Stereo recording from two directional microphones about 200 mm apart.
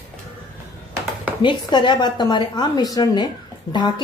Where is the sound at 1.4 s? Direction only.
25° left (ahead or behind).